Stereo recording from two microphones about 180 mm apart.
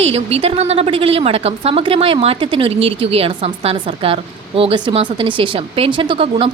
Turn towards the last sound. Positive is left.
turn(degrees=-30)  # may be behind; listen again after turning